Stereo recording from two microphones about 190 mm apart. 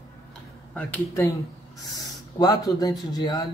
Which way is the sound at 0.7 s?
15° left (ahead or behind).